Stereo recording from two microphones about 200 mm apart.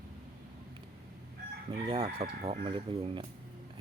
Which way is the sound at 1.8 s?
25° right (ahead or behind).